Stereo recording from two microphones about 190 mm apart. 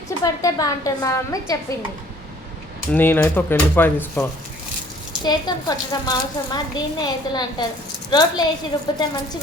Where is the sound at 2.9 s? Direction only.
10° left (ahead or behind).